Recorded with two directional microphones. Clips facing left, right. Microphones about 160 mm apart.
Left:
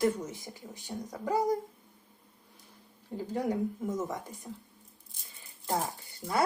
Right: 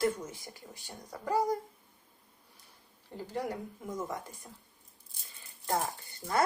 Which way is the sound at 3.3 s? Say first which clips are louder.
Left 6 dB; 15° left (ahead or behind).